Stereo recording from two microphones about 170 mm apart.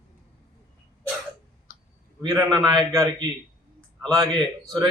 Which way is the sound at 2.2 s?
20° right (ahead or behind).